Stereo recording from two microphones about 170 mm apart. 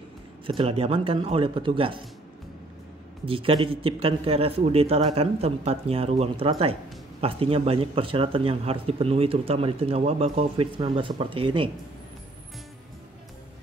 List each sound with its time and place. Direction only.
0.5 s speech: 35° right (ahead or behind)
3.3 s speech: 30° right (ahead or behind)